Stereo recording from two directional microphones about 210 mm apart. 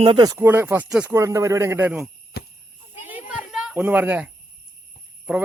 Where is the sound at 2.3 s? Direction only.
50° left (ahead or behind).